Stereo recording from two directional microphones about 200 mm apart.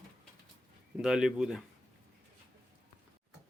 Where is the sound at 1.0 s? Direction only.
5° right (ahead or behind).